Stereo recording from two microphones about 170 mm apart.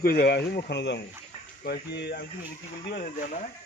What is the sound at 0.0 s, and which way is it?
Speech, 65° left (ahead or behind).